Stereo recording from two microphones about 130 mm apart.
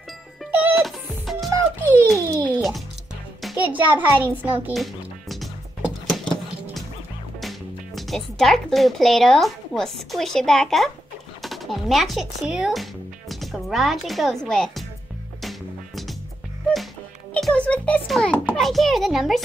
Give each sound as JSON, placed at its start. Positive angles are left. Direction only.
{"t": 0.7, "sound": "music", "side_deg": 0}
{"t": 1.5, "sound": "music", "side_deg": -25}
{"t": 2.1, "sound": "a sound", "side_deg": -25}
{"t": 3.5, "sound": "a child's voice", "side_deg": -10}
{"t": 6.0, "sound": "a sound", "side_deg": 0}
{"t": 7.3, "sound": "speech", "side_deg": 0}
{"t": 15.4, "sound": "music", "side_deg": 0}
{"t": 17.3, "sound": "music", "side_deg": 5}
{"t": 18.0, "sound": "speech", "side_deg": 0}